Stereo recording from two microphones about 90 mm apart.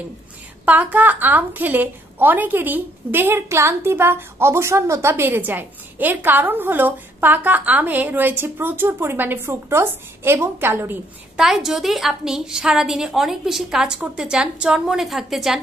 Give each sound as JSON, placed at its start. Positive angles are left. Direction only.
{"t": 0.7, "sound": "a woman's voice", "side_deg": -20}
{"t": 11.3, "sound": "a woman's voice", "side_deg": -5}